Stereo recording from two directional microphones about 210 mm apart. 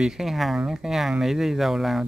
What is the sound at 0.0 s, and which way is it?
A man's voice, centre (ahead or behind).